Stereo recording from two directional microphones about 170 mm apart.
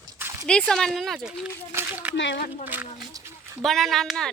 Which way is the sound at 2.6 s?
10° right (ahead or behind).